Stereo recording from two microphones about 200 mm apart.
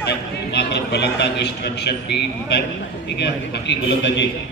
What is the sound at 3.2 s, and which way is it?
A man's voice, 60° left (ahead or behind).